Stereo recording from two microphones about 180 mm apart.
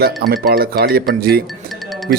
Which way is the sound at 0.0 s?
55° right (ahead or behind).